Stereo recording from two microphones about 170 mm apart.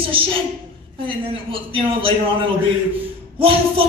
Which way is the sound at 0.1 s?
30° right (ahead or behind).